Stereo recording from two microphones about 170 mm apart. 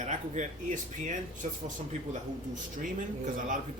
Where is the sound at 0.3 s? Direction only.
45° right (ahead or behind).